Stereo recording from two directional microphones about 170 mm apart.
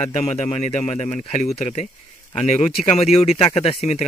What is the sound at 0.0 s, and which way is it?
Speech, 40° left (ahead or behind).